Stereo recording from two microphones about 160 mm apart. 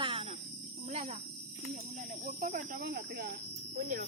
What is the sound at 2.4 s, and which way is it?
Speech, 65° right (ahead or behind).